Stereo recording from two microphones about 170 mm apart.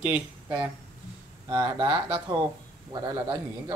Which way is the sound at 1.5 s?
25° right (ahead or behind).